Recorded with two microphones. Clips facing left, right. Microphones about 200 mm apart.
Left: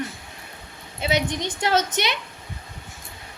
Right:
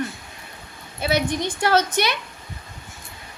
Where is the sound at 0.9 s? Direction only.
20° left (ahead or behind).